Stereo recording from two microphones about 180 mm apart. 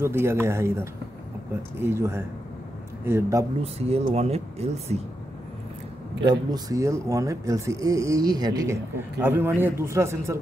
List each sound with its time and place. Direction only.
0.0 s speech: 15° right (ahead or behind)
3.6 s speech: 35° right (ahead or behind)
6.2 s speech: 25° right (ahead or behind)